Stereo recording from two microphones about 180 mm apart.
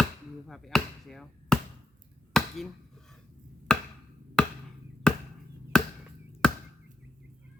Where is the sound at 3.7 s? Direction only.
5° left (ahead or behind).